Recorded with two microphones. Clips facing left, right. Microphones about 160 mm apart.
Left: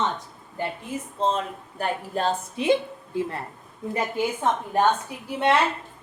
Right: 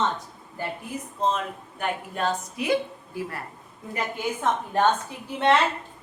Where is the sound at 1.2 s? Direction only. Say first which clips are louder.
Left 1 dB; 30° left (ahead or behind).